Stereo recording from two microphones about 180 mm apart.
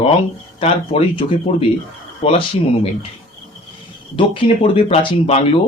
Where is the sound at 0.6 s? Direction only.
30° left (ahead or behind).